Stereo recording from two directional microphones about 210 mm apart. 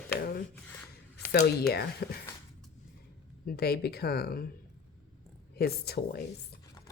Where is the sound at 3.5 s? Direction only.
50° left (ahead or behind).